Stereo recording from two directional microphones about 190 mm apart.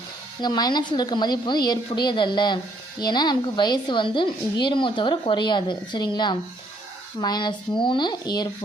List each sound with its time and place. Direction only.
0.4 s a woman's voice: 20° left (ahead or behind)